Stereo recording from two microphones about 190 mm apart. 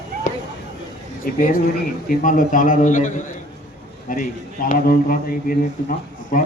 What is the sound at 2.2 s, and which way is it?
A man's voice, 45° left (ahead or behind).